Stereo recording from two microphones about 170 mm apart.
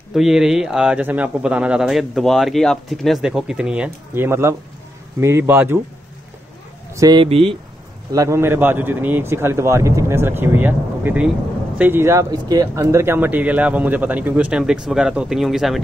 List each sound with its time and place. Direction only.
0.1 s speech: 5° right (ahead or behind)
6.9 s speech: 20° right (ahead or behind)
7.2 s speech: 35° right (ahead or behind)
8.1 s speech: 20° right (ahead or behind); by 15.8 s centre (ahead or behind)